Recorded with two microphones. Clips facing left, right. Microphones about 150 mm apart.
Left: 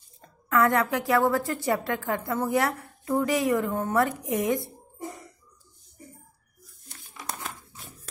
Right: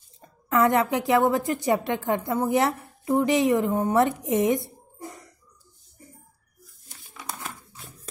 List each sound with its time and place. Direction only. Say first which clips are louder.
0.2 s a woman's voice: right 2 dB; 20° right (ahead or behind)
6.9 s crumpling: even; centre (ahead or behind)